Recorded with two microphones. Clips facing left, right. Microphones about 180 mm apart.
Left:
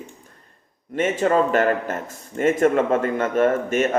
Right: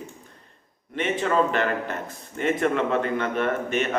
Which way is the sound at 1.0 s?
45° left (ahead or behind).